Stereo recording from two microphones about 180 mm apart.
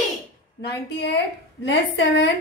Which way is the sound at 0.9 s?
65° left (ahead or behind).